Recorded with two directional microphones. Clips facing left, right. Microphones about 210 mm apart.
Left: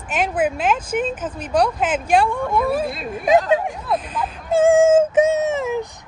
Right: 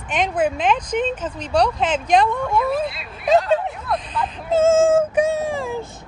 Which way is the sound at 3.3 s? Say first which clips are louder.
Left 1 dB; 15° left (ahead or behind).